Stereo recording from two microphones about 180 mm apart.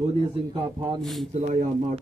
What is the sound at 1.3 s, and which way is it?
Speech, 45° right (ahead or behind).